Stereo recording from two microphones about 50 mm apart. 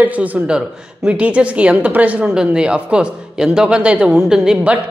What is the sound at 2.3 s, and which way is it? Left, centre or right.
Speech, centre.